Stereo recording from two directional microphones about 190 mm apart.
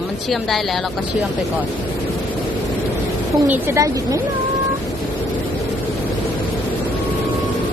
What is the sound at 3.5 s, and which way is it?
Speech, 15° right (ahead or behind).